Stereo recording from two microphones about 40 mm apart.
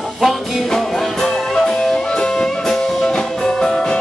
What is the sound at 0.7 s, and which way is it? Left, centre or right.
Music, centre.